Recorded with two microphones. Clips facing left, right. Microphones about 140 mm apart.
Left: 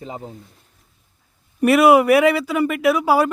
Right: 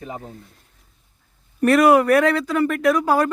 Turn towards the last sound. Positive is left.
turn(degrees=10)  # may be behind; listen again after turning